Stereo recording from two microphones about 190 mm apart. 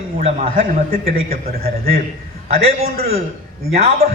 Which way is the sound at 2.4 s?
35° right (ahead or behind).